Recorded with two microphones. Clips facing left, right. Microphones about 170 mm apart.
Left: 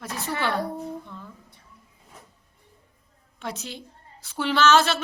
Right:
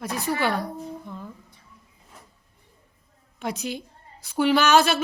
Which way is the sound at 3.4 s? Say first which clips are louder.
Right 5 dB; 15° right (ahead or behind).